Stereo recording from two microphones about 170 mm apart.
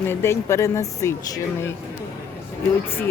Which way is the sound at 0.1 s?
15° left (ahead or behind).